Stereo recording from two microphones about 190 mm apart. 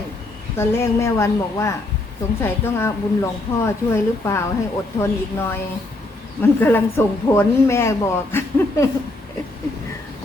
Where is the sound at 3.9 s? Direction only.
15° left (ahead or behind).